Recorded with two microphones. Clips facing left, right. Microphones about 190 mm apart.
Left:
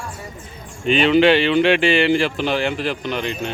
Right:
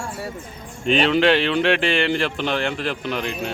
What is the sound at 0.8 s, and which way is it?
Speech, centre (ahead or behind).